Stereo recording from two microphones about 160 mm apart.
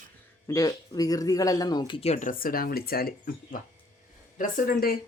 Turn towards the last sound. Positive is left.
turn(degrees=65)  # may be behind; listen again after turning